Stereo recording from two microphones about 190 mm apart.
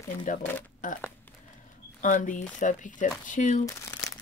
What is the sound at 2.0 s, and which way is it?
Speech, 45° left (ahead or behind).